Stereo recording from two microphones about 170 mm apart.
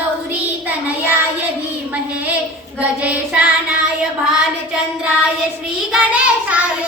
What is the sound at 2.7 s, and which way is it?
Child singing, 5° right (ahead or behind).